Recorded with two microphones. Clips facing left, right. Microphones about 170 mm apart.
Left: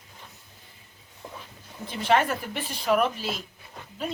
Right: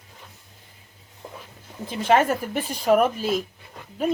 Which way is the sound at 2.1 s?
45° right (ahead or behind).